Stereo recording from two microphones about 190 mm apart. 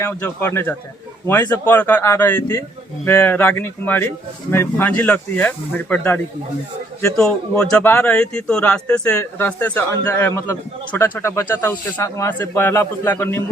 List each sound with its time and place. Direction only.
0.0 s speech: 10° left (ahead or behind)
7.5 s speech: 15° left (ahead or behind)